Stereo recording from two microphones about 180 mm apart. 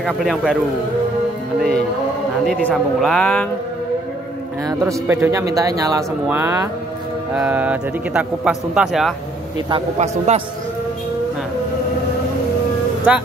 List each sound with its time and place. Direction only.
0.0 s speech: centre (ahead or behind)
2.4 s speech: centre (ahead or behind)
4.6 s a man's voice: 15° right (ahead or behind); by 9.1 s centre (ahead or behind)
9.9 s a man's voice: 40° right (ahead or behind)
13.1 s a man's voice: 5° right (ahead or behind)